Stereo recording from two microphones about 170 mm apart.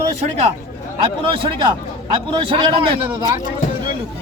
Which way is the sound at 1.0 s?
30° right (ahead or behind).